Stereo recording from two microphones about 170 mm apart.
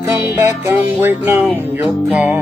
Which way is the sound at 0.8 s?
15° right (ahead or behind).